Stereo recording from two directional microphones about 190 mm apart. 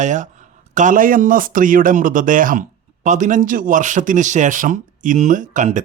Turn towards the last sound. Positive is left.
turn(degrees=-40)  # may be behind; listen again after turning